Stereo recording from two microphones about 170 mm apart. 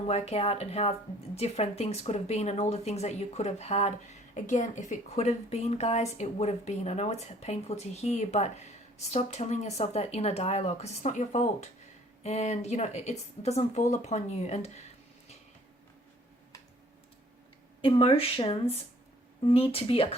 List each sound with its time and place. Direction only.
0.1 s a woman's voice: 40° left (ahead or behind)
17.8 s a woman's voice: 30° left (ahead or behind)